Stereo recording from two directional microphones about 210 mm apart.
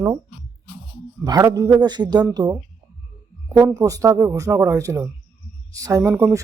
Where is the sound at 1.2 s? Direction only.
15° right (ahead or behind).